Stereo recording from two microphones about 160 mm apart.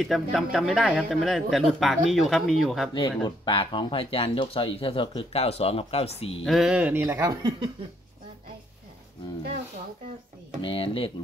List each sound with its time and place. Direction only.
0.0 s speech: centre (ahead or behind)
2.9 s speech: 30° left (ahead or behind)
6.4 s speech: centre (ahead or behind)
7.2 s speech: 30° right (ahead or behind)
10.6 s speech: 35° left (ahead or behind)